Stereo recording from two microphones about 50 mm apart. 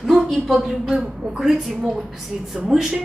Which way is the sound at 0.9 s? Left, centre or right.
Centre.